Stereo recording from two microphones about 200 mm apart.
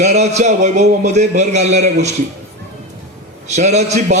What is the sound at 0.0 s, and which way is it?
A man's voice, 35° right (ahead or behind).